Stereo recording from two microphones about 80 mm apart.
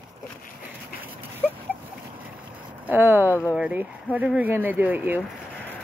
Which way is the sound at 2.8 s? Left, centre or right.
Right.